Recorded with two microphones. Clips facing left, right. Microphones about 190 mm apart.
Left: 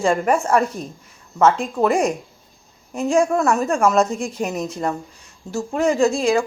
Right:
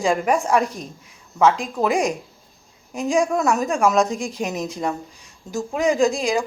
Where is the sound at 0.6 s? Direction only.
30° left (ahead or behind).